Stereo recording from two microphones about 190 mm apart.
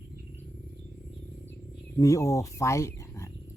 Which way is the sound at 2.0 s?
15° left (ahead or behind).